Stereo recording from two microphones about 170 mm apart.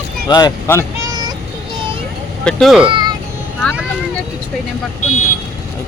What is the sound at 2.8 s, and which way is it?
Speech, 30° right (ahead or behind).